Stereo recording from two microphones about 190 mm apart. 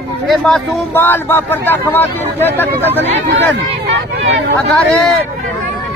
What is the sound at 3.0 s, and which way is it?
Speech, 65° right (ahead or behind).